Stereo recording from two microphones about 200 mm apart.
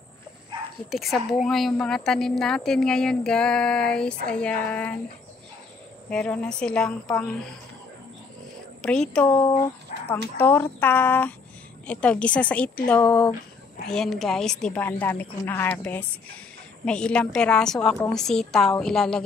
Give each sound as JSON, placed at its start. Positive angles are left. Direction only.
{"t": 0.8, "sound": "a woman's voice", "side_deg": 0}
{"t": 6.0, "sound": "a woman's voice", "side_deg": 5}
{"t": 8.8, "sound": "a woman's voice", "side_deg": 5}
{"t": 9.3, "sound": "speech", "side_deg": 25}
{"t": 10.4, "sound": "a woman's voice", "side_deg": 10}
{"t": 13.8, "sound": "a woman's voice", "side_deg": 0}